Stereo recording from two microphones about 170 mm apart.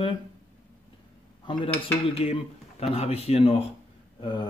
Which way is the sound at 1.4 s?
30° left (ahead or behind).